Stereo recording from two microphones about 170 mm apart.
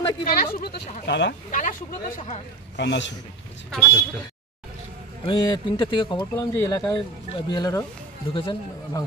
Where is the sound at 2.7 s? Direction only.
90° left.